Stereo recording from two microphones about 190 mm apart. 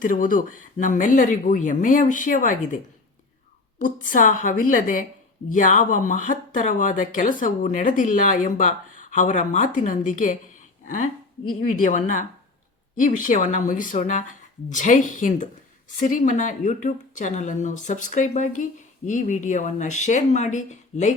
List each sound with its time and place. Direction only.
0.0 s speech: 45° left (ahead or behind)
3.8 s a woman's voice: 45° left (ahead or behind)